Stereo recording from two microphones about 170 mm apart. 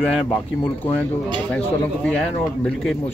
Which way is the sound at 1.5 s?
5° left (ahead or behind).